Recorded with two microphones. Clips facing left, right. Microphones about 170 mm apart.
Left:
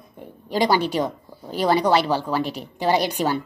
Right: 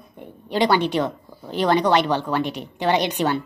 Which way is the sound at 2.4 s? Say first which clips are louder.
Right 1 dB; 35° left (ahead or behind).